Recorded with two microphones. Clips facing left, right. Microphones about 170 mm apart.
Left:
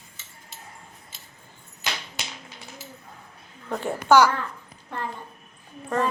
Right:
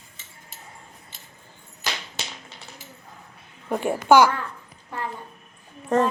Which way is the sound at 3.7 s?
15° right (ahead or behind).